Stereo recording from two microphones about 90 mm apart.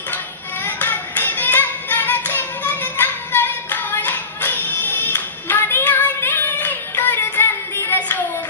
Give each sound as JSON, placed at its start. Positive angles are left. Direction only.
{"t": 0.7, "sound": "music", "side_deg": 20}